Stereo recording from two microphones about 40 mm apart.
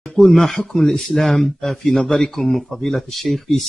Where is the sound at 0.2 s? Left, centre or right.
Centre.